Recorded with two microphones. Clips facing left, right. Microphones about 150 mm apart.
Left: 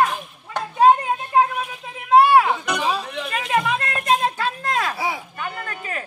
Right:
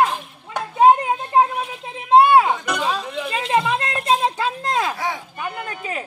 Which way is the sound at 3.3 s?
25° right (ahead or behind).